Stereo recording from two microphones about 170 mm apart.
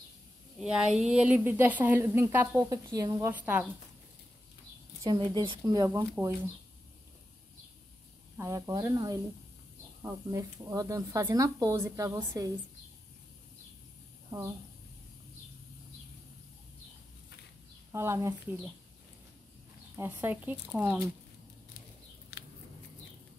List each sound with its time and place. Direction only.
0.6 s a woman's voice: 5° right (ahead or behind)
5.0 s a woman's voice: 30° right (ahead or behind)
8.4 s speech: 20° right (ahead or behind)
17.9 s a woman's voice: 15° right (ahead or behind)
20.0 s a woman's voice: 10° right (ahead or behind)